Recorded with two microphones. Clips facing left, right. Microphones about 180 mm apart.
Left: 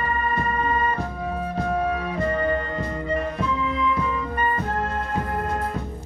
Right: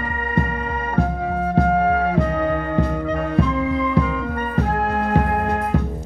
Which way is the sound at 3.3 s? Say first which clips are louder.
Right 6 dB; 65° right (ahead or behind).